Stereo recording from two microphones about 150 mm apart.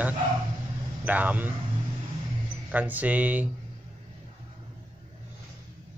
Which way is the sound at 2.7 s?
10° right (ahead or behind).